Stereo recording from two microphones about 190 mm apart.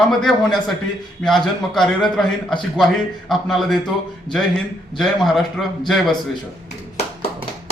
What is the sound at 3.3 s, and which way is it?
Speech, centre (ahead or behind).